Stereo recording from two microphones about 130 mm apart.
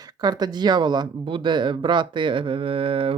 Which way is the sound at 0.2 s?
30° right (ahead or behind).